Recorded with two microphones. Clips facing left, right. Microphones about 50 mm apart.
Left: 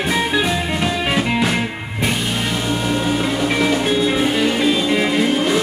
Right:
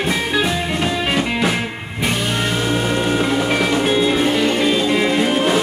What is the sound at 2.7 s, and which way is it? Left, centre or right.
Music, right.